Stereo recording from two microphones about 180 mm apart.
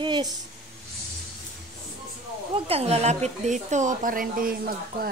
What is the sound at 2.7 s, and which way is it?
A woman's voice, 35° right (ahead or behind).